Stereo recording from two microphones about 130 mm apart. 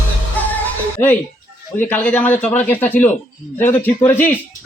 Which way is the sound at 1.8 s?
10° left (ahead or behind).